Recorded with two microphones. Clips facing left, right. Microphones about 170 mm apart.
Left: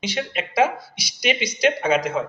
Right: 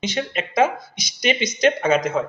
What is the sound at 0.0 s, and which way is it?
Speech, 10° left (ahead or behind).